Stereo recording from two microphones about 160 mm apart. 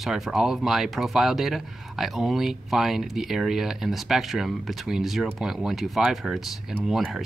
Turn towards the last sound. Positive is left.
turn(degrees=0)  # may be behind; listen again after turning